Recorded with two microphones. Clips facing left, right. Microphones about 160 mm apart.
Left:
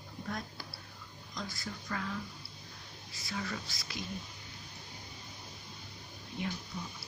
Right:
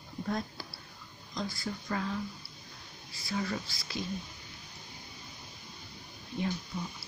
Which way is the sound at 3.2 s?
30° right (ahead or behind).